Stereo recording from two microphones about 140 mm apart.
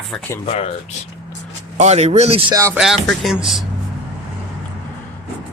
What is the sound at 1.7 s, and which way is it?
Speech, 50° right (ahead or behind).